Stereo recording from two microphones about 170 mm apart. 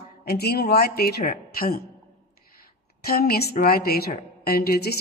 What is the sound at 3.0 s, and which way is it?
Speech, 60° left (ahead or behind).